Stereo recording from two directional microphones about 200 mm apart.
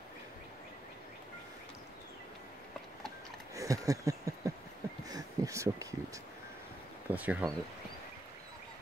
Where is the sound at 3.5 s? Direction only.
15° right (ahead or behind).